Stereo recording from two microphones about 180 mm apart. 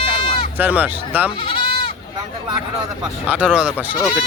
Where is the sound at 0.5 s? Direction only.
10° right (ahead or behind).